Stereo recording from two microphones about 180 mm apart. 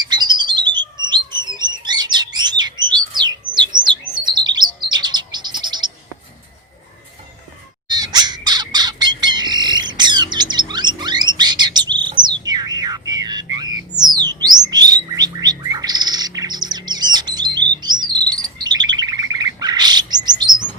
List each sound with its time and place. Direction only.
0.0 s bird: 25° right (ahead or behind)
7.9 s squawk: 25° right (ahead or behind)
14.7 s bird: 20° right (ahead or behind)